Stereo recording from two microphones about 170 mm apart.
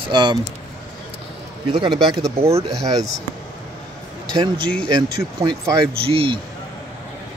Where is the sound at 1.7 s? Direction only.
25° right (ahead or behind).